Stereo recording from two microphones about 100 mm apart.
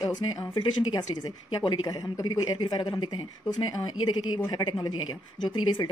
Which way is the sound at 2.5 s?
50° left (ahead or behind).